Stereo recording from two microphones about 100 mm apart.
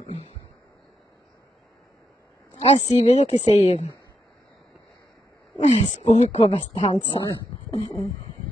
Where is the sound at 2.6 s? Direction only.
90° left.